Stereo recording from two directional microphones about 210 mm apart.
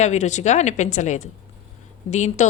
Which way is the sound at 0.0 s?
35° left (ahead or behind).